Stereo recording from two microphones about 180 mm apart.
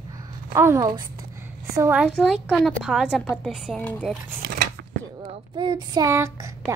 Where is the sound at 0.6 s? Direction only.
15° right (ahead or behind); by 4.2 s 5° left (ahead or behind).